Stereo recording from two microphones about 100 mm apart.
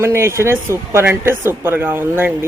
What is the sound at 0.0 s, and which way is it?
Speech, 25° right (ahead or behind).